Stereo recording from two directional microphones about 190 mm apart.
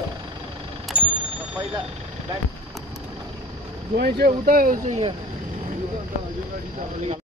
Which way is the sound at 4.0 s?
50° right (ahead or behind).